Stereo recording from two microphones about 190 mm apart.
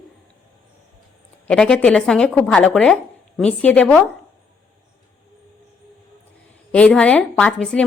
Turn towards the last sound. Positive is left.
turn(degrees=5)  # may be behind; listen again after turning